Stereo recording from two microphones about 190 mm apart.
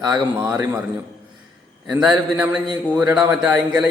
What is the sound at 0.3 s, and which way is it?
Speech, 5° right (ahead or behind).